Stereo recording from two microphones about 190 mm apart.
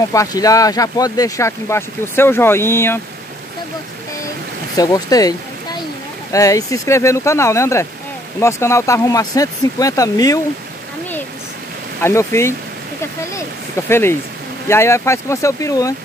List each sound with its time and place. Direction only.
0.1 s speech: 20° left (ahead or behind)
4.7 s speech: 20° left (ahead or behind)
12.0 s speech: 15° left (ahead or behind)
13.8 s speech: 15° left (ahead or behind)